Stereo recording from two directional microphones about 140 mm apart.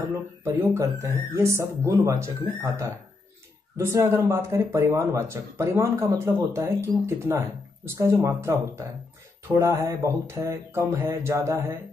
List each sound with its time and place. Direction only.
0.4 s speech: 20° right (ahead or behind)